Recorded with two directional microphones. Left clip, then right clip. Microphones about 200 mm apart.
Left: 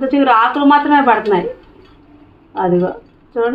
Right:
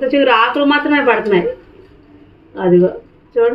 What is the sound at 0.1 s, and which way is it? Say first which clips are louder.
A woman's voice: left 1 dB; 15° left (ahead or behind).